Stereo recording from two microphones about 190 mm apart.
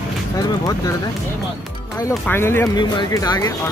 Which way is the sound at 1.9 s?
15° left (ahead or behind).